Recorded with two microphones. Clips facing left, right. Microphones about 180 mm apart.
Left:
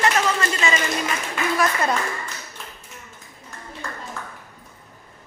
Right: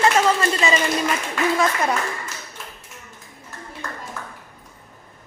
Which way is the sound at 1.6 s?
15° right (ahead or behind).